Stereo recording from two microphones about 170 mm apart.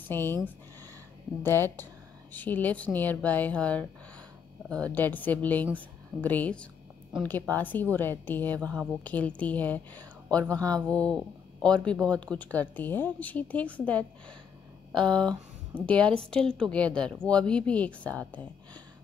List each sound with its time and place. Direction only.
0.1 s speech: 10° left (ahead or behind)
1.4 s a woman's voice: 15° left (ahead or behind)
10.5 s speech: 20° right (ahead or behind)
10.9 s speech: 5° left (ahead or behind)
14.9 s speech: 25° right (ahead or behind)
15.8 s a woman's voice: 5° left (ahead or behind)